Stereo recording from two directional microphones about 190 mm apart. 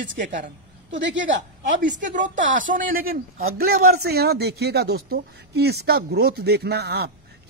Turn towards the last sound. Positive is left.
turn(degrees=-60)  # may be behind; listen again after turning